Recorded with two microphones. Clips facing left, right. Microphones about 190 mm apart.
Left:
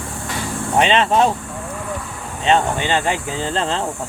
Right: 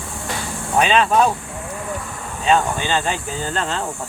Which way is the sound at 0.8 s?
25° left (ahead or behind).